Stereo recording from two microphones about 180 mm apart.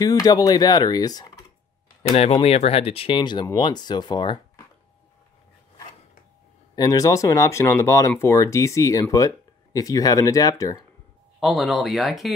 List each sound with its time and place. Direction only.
0.0 s speech: 20° left (ahead or behind)
2.1 s speech: 35° left (ahead or behind)
6.7 s speech: 20° left (ahead or behind)
11.3 s speech: centre (ahead or behind)